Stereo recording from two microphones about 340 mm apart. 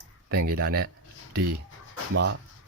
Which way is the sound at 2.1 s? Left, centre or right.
Right.